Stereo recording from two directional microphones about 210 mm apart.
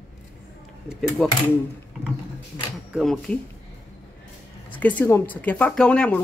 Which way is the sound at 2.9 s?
Centre (ahead or behind).